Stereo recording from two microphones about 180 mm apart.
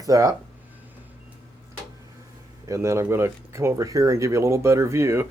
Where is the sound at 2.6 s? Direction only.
15° right (ahead or behind).